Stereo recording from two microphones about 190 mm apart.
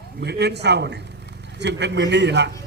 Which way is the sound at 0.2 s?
60° right (ahead or behind).